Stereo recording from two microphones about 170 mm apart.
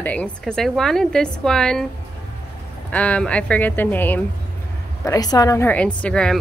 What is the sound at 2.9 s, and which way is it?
A woman's voice, 10° left (ahead or behind).